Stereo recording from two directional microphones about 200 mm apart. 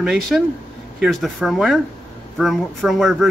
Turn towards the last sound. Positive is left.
turn(degrees=0)  # may be behind; listen again after turning